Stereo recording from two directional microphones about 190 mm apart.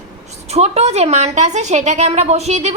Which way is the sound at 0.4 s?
35° right (ahead or behind).